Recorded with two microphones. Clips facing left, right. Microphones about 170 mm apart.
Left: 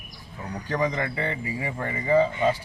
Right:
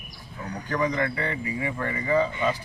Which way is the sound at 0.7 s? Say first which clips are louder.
Right 1 dB; 30° left (ahead or behind).